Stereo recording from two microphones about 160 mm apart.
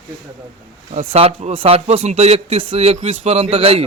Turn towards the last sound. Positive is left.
turn(degrees=-35)  # may be behind; listen again after turning